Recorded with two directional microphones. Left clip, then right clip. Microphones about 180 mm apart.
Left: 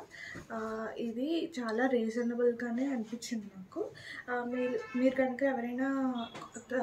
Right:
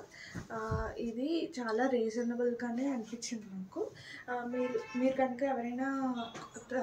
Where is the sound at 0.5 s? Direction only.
35° left (ahead or behind).